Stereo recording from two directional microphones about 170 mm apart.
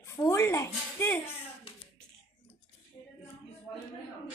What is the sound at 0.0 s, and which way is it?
Speech, 15° left (ahead or behind).